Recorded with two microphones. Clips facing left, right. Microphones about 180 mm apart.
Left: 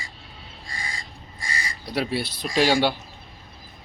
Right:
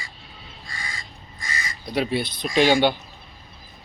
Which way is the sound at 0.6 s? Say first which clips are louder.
Left 1 dB; 35° left (ahead or behind).